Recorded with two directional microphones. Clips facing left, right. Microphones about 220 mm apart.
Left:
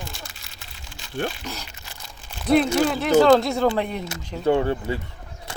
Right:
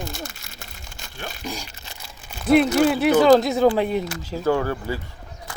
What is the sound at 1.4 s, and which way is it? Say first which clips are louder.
Speech: right 3 dB; 10° right (ahead or behind).